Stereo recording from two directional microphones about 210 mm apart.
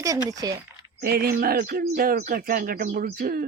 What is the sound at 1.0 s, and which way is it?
Speech, 50° right (ahead or behind).